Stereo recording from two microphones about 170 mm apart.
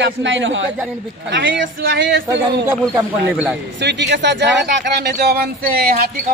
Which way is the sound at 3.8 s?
90° right.